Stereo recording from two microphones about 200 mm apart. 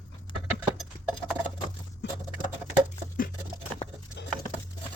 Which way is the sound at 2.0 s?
60° left (ahead or behind).